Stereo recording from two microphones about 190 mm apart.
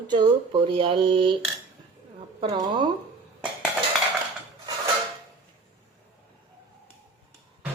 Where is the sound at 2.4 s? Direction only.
25° right (ahead or behind).